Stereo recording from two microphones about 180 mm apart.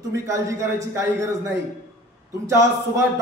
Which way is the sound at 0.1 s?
15° right (ahead or behind).